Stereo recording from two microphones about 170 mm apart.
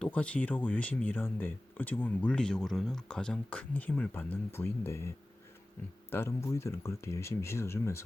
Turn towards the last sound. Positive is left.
turn(degrees=15)  # may be behind; listen again after turning